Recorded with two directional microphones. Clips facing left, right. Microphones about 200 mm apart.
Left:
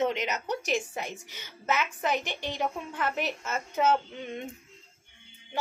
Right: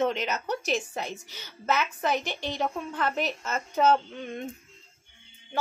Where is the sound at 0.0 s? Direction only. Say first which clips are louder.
Right 1 dB; 15° left (ahead or behind).